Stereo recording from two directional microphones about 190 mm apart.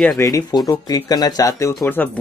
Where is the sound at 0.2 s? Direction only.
20° left (ahead or behind).